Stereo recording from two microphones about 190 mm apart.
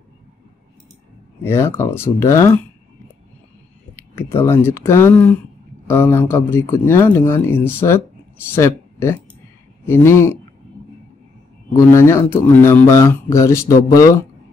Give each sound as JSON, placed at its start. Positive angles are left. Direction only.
{"t": 1.4, "sound": "speech", "side_deg": 10}
{"t": 3.9, "sound": "speech", "side_deg": 10}
{"t": 11.7, "sound": "speech", "side_deg": 15}